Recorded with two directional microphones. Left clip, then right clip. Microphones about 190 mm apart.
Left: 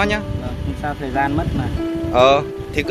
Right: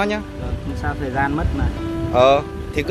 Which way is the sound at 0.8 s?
25° left (ahead or behind).